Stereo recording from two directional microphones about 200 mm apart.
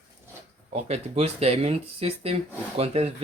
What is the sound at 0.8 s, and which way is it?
Speech, 35° right (ahead or behind).